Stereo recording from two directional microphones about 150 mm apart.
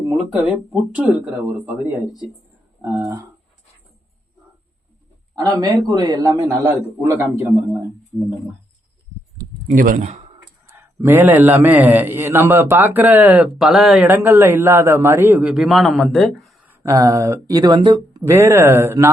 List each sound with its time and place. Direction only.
0.4 s a man's voice: 10° right (ahead or behind)
2.9 s a man's voice: 20° right (ahead or behind)
5.3 s a man's voice: 25° right (ahead or behind)
9.6 s speech: 65° right (ahead or behind)
10.8 s a man's voice: 15° right (ahead or behind)
14.1 s a man's voice: 15° right (ahead or behind)
16.6 s a man's voice: 20° right (ahead or behind)